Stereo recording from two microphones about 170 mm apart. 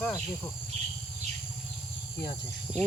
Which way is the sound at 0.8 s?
40° right (ahead or behind).